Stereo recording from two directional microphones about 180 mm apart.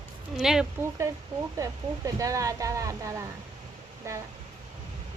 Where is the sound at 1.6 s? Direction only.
20° right (ahead or behind).